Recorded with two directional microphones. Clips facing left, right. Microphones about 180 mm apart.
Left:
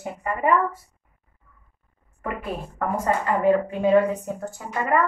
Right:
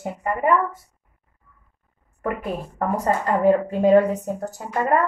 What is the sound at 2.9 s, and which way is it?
A woman's voice, 40° right (ahead or behind).